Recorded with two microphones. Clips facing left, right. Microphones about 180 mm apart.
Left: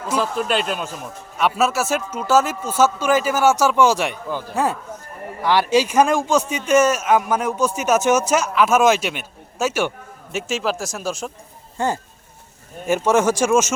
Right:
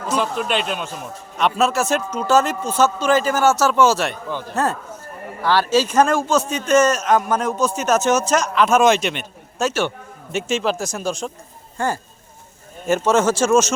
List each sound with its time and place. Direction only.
0.1 s a man's voice: centre (ahead or behind)
11.8 s a man's voice: 20° left (ahead or behind)